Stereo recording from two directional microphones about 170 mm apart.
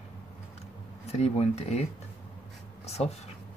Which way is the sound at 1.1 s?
40° left (ahead or behind).